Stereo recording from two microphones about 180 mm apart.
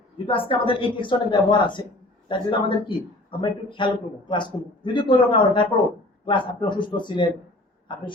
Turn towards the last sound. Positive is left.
turn(degrees=25)  # may be behind; listen again after turning